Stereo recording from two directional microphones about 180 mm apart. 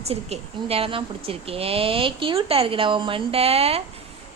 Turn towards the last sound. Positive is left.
turn(degrees=-35)  # may be behind; listen again after turning